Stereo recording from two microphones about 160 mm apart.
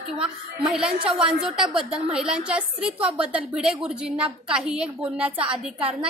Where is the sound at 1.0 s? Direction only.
30° right (ahead or behind).